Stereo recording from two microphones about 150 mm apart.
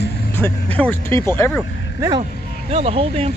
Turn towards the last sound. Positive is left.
turn(degrees=-40)  # may be behind; listen again after turning